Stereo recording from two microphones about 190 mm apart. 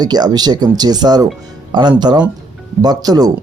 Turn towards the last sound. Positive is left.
turn(degrees=-20)  # may be behind; listen again after turning